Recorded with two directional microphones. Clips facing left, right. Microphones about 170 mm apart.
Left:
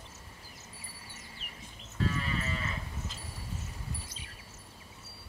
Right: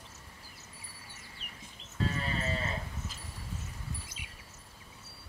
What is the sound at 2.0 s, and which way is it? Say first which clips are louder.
Sheep: even; 35° right (ahead or behind).